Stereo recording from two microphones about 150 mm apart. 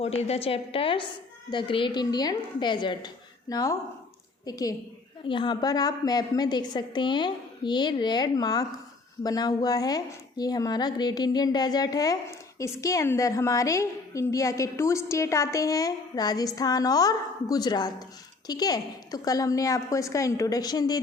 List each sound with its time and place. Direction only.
0.0 s a woman's voice: 45° left (ahead or behind); by 21.0 s 25° left (ahead or behind)